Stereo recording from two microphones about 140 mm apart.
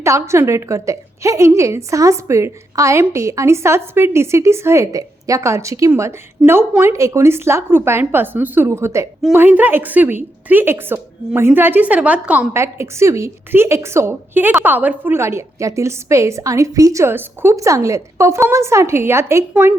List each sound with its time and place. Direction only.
0.0 s a woman's voice: 20° right (ahead or behind)